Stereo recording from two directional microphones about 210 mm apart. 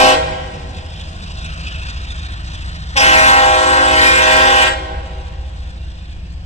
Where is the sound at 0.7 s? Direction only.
30° left (ahead or behind).